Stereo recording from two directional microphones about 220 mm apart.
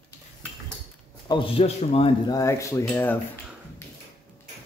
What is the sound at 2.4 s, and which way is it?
Speech, 15° left (ahead or behind).